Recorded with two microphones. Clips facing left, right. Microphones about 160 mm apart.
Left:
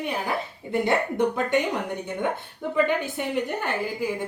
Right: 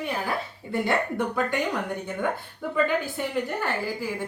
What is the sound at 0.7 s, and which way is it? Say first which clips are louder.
A woman's voice: left 2 dB; 20° left (ahead or behind).